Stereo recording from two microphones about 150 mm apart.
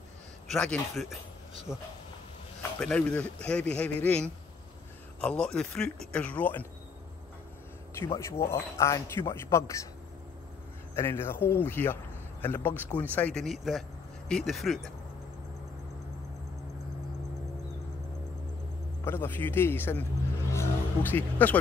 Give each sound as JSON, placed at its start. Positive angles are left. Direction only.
{"t": 0.5, "sound": "speech", "side_deg": 0}
{"t": 1.7, "sound": "a man's voice", "side_deg": 15}
{"t": 7.9, "sound": "a man's voice", "side_deg": 15}
{"t": 11.0, "sound": "a man's voice", "side_deg": 15}
{"t": 19.0, "sound": "a man's voice", "side_deg": 15}
{"t": 20.5, "sound": "music", "side_deg": 10}